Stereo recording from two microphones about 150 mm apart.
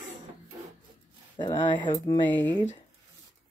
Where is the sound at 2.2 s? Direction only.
10° left (ahead or behind).